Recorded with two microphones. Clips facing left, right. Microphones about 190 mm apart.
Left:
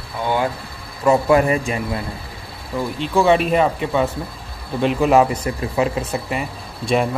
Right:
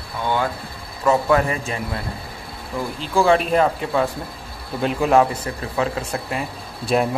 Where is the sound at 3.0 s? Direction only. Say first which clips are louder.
Left 1 dB; centre (ahead or behind).